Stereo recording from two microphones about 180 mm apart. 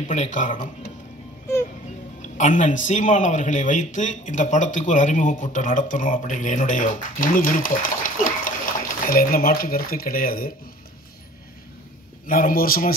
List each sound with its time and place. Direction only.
0.1 s a man's voice: 45° left (ahead or behind)
2.3 s a man's voice: 45° left (ahead or behind)
12.3 s a man's voice: 50° left (ahead or behind)